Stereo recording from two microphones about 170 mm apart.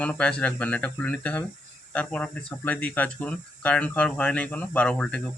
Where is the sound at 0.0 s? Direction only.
5° left (ahead or behind).